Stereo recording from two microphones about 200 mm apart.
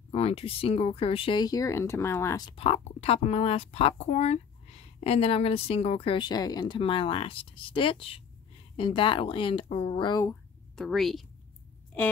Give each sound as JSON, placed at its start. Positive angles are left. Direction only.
{"t": 0.1, "sound": "speech", "side_deg": 30}
{"t": 10.8, "sound": "a woman's voice", "side_deg": 0}